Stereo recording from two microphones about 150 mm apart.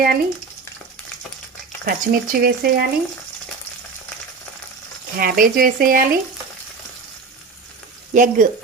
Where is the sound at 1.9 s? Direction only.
75° right (ahead or behind).